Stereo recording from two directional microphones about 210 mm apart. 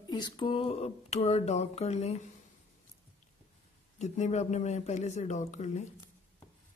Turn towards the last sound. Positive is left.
turn(degrees=35)  # may be behind; listen again after turning